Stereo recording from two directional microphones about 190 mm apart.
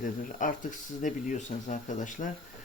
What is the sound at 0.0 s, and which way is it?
Speech, 45° left (ahead or behind).